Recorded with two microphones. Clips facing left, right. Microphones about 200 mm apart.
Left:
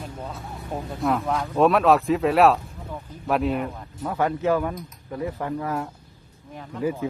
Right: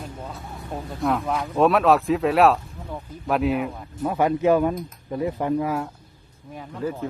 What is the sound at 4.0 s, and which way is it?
Speech, 15° right (ahead or behind).